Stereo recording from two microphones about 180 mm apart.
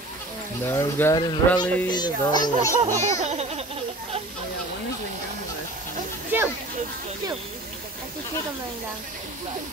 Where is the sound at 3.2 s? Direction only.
35° right (ahead or behind).